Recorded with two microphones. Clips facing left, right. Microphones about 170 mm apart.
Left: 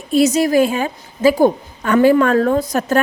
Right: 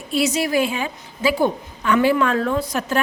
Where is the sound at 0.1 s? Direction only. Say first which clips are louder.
Left 7 dB; 45° left (ahead or behind).